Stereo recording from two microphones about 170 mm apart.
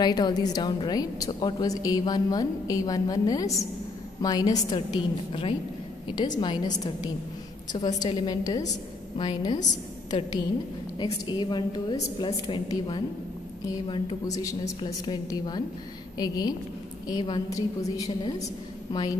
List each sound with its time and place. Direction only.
0.0 s a woman's voice: 25° left (ahead or behind)
11.0 s a woman's voice: 25° left (ahead or behind)